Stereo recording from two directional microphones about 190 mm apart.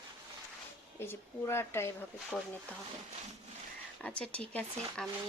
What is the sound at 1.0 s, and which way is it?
Speech, 10° left (ahead or behind).